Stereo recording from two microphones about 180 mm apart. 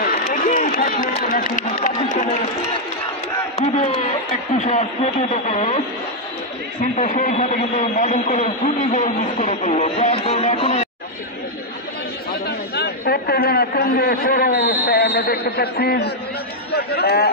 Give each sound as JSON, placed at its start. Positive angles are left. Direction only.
{"t": 0.0, "sound": "speech", "side_deg": 50}
{"t": 3.5, "sound": "a man's voice", "side_deg": 35}
{"t": 6.8, "sound": "a man's voice", "side_deg": 45}
{"t": 12.4, "sound": "a man's voice", "side_deg": 65}